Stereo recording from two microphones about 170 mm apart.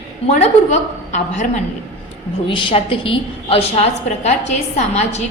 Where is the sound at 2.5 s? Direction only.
30° left (ahead or behind).